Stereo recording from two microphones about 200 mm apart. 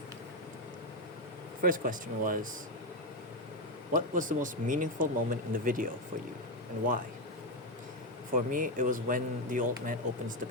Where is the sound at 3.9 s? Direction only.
40° right (ahead or behind).